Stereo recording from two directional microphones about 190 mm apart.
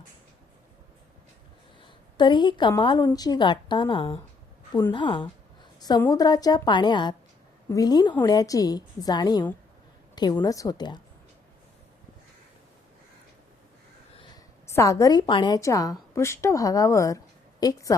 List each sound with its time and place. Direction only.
1.8 s a woman's voice: 25° left (ahead or behind)
14.7 s a woman's voice: 15° left (ahead or behind)